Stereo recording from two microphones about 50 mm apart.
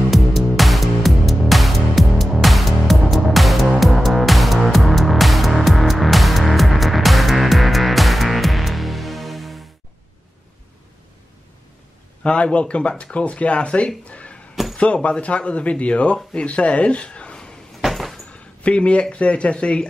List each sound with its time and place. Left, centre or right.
0.1 s music: centre
12.2 s speech: left
14.5 s a sound: centre
14.8 s speech: left
17.8 s a sound: centre
18.6 s speech: left